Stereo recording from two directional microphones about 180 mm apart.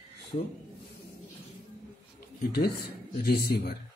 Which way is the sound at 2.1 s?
60° left (ahead or behind).